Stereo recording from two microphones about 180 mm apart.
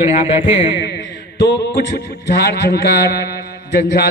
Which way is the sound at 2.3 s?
65° left (ahead or behind).